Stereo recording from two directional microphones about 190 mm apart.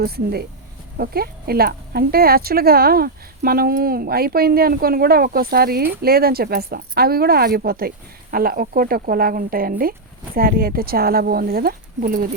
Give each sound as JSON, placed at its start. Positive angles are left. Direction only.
{"t": 0.0, "sound": "speech", "side_deg": -55}